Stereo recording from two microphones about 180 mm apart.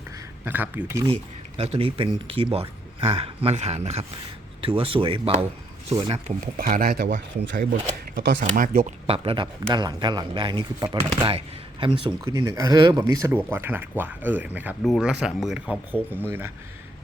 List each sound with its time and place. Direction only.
0.4 s speech: 10° right (ahead or behind)
1.1 s a man's voice: 35° right (ahead or behind)
6.2 s speech: 45° right (ahead or behind); by 7.6 s 90° right
7.6 s speech: 50° right (ahead or behind)
9.0 s a man's voice: 30° right (ahead or behind); by 16.0 s 5° right (ahead or behind)